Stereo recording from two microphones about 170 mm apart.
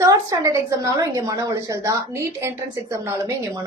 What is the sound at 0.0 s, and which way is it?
A woman's voice, 20° right (ahead or behind).